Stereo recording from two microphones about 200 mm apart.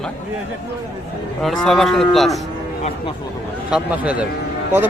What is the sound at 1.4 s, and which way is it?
Speech, centre (ahead or behind).